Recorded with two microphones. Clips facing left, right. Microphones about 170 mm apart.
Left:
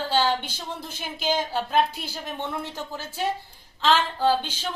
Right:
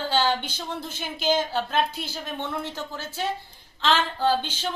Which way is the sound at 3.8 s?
5° left (ahead or behind).